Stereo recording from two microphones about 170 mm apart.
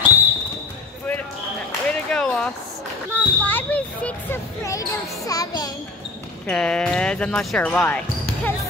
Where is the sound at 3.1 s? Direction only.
10° left (ahead or behind).